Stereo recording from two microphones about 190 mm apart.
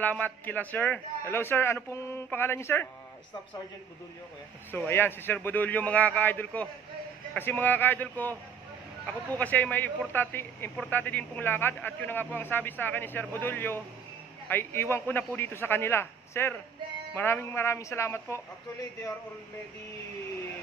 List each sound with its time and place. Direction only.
0.0 s a man's voice: 10° left (ahead or behind)
4.6 s a man's voice: 10° left (ahead or behind)